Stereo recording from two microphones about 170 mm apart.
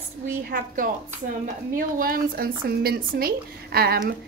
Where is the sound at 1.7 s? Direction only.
55° right (ahead or behind).